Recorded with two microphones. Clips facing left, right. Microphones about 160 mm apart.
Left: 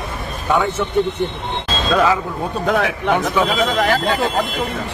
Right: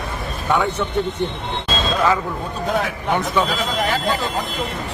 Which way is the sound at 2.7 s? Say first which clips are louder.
Left 4 dB; 70° left (ahead or behind).